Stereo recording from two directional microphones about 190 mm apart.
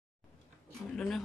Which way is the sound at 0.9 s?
5° left (ahead or behind).